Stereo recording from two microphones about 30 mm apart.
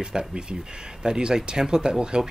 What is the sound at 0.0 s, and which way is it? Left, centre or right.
Speech, right.